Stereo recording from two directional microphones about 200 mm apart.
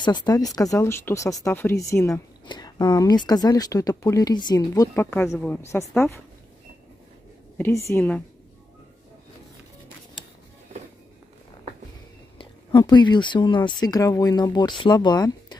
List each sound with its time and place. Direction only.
0.0 s speech: 20° left (ahead or behind)
7.5 s speech: 10° left (ahead or behind)
12.4 s speech: 20° left (ahead or behind)